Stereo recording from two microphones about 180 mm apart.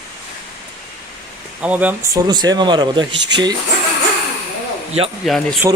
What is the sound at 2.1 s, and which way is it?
A man's voice, 25° right (ahead or behind).